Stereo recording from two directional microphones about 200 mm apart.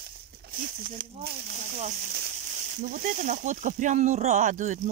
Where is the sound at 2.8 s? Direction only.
40° right (ahead or behind).